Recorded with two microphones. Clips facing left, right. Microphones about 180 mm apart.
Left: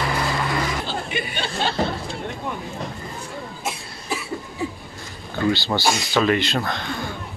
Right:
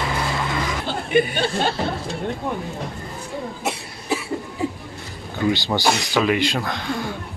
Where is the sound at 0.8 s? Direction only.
50° right (ahead or behind).